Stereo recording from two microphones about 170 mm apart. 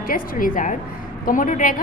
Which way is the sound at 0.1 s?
55° left (ahead or behind).